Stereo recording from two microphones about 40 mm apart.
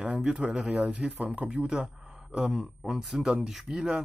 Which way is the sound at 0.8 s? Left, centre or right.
Right.